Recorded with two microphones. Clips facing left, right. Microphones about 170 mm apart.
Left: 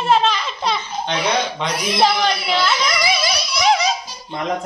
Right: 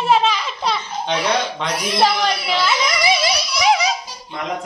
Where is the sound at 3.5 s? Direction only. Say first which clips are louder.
Left 1 dB; 10° right (ahead or behind).